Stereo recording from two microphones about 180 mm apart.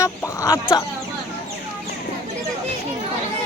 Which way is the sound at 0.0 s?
20° left (ahead or behind).